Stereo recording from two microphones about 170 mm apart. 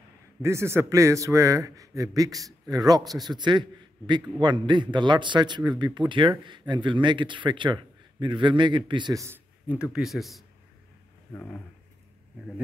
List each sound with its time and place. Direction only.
0.4 s a man's voice: 15° right (ahead or behind)
9.9 s a man's voice: centre (ahead or behind)